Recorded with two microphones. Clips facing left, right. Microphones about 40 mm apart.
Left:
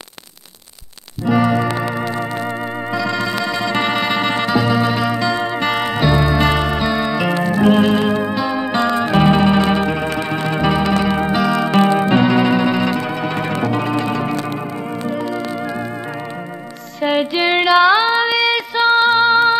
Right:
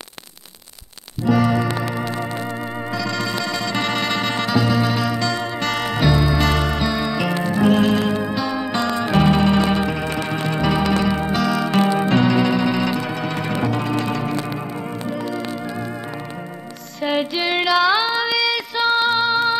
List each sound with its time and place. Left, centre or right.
1.2 s music: centre
1.8 s organ: centre
2.9 s music: centre
13.0 s organ: centre
13.7 s music: centre
17.0 s female singing: centre